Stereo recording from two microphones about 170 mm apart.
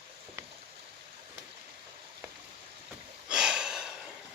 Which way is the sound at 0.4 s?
20° right (ahead or behind).